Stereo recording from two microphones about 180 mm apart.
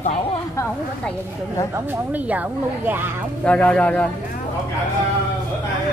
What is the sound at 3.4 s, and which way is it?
Speech, 5° left (ahead or behind).